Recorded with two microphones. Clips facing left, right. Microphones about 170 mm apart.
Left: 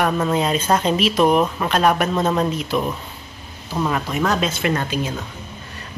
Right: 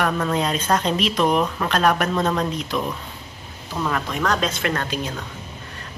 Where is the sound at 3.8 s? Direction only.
10° left (ahead or behind).